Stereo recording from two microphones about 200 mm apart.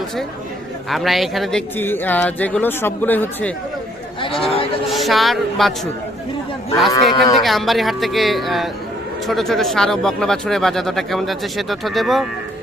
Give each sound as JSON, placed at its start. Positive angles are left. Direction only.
{"t": 0.9, "sound": "speech", "side_deg": 0}
{"t": 4.2, "sound": "a man's voice", "side_deg": 25}
{"t": 4.9, "sound": "speech", "side_deg": 0}
{"t": 6.9, "sound": "speech", "side_deg": 15}
{"t": 7.4, "sound": "speech", "side_deg": 0}